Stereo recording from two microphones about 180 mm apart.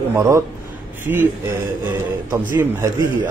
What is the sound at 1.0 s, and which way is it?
Speech, 10° right (ahead or behind).